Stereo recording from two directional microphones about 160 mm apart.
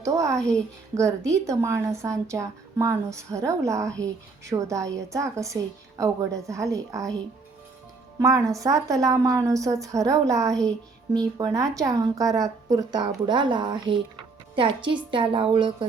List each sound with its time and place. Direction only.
0.0 s a woman's voice: 20° right (ahead or behind)
0.3 s a woman's voice: 5° left (ahead or behind)
0.9 s a woman's voice: 20° right (ahead or behind)
8.2 s a woman's voice: 20° right (ahead or behind)